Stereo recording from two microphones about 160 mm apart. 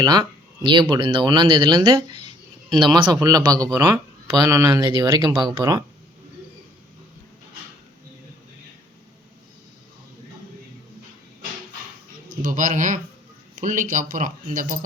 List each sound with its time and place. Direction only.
0.0 s speech: 25° right (ahead or behind)
12.4 s speech: 55° right (ahead or behind)